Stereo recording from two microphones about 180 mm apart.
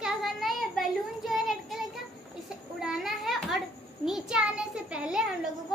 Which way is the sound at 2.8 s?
Centre (ahead or behind).